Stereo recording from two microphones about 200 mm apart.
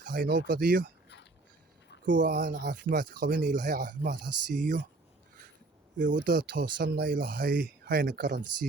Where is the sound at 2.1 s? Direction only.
60° right (ahead or behind); by 4.1 s 40° right (ahead or behind).